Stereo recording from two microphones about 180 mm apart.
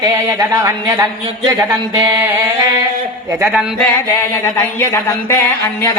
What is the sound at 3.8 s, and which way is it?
Music, 15° left (ahead or behind).